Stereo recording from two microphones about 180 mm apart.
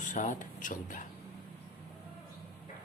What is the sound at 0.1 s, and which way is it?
Speech, 45° left (ahead or behind).